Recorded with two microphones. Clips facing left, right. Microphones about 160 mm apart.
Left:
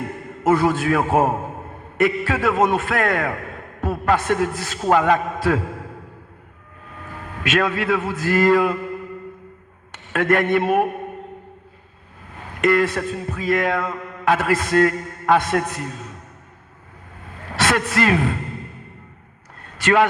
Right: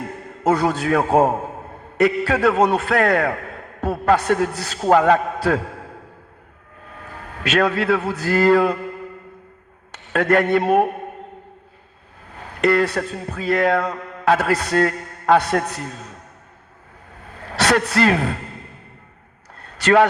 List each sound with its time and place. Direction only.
0.5 s a man's voice: 40° right (ahead or behind)
7.4 s a man's voice: 40° right (ahead or behind)
10.1 s a man's voice: 40° right (ahead or behind)
12.6 s a man's voice: 35° right (ahead or behind)
17.6 s a man's voice: 40° right (ahead or behind)
19.6 s a sound: 40° right (ahead or behind)